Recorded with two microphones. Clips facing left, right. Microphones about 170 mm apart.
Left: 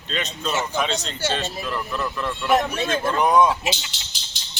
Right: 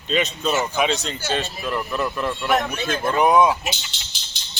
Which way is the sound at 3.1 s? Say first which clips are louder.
Right 2 dB; 10° right (ahead or behind).